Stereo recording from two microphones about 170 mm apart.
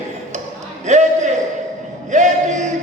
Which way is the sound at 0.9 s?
45° right (ahead or behind).